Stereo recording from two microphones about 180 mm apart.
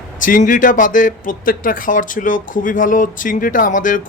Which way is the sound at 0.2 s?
45° left (ahead or behind).